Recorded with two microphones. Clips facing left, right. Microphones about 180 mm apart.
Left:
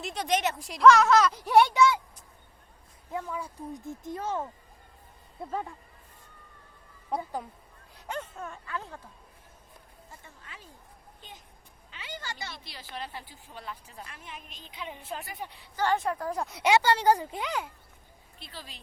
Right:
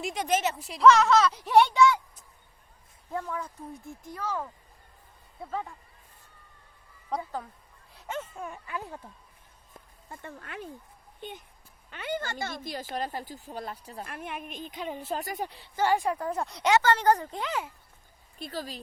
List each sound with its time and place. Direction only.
0.0 s speech: 10° right (ahead or behind)
3.1 s speech: 10° left (ahead or behind)
7.9 s speech: centre (ahead or behind); by 9.0 s 15° right (ahead or behind)
9.7 s a sound: 55° right (ahead or behind)
11.2 s speech: 60° right (ahead or behind); by 14.1 s 40° right (ahead or behind)
14.1 s a woman's voice: 55° right (ahead or behind); by 15.8 s 35° right (ahead or behind)
16.0 s speech: centre (ahead or behind)
17.4 s speech: centre (ahead or behind)
18.3 s speech: 45° right (ahead or behind)